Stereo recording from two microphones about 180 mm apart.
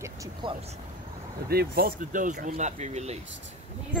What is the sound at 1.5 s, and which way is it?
Speech, 60° right (ahead or behind).